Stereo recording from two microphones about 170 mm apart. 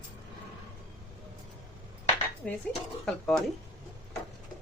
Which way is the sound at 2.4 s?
5° left (ahead or behind).